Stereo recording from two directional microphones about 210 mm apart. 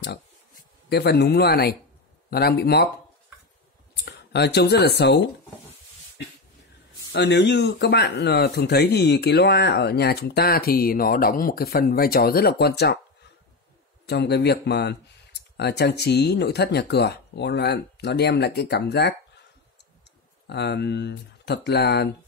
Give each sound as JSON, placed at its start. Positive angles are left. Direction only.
{"t": 0.8, "sound": "speech", "side_deg": 50}
{"t": 3.9, "sound": "speech", "side_deg": 55}
{"t": 7.1, "sound": "speech", "side_deg": 55}
{"t": 14.0, "sound": "speech", "side_deg": 50}
{"t": 20.4, "sound": "speech", "side_deg": 50}